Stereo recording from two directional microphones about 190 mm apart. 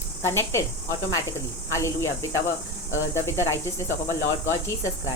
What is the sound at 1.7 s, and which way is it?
Speech, 15° left (ahead or behind).